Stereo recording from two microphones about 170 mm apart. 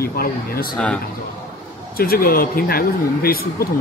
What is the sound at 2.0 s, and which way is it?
Speech, 60° left (ahead or behind).